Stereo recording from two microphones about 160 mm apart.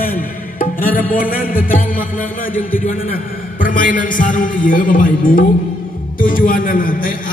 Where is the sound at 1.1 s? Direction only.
60° left (ahead or behind).